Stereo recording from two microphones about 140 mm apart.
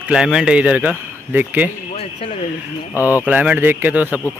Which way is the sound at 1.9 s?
50° left (ahead or behind).